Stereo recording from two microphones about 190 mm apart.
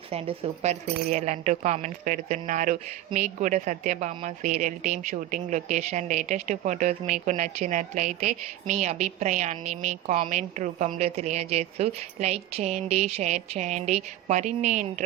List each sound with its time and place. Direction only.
0.1 s speech: 30° right (ahead or behind)